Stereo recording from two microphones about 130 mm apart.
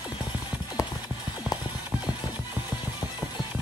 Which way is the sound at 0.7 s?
30° left (ahead or behind).